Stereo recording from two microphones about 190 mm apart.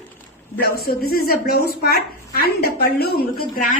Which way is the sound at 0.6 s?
55° left (ahead or behind).